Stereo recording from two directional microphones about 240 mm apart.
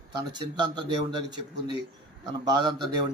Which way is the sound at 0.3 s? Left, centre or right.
Centre.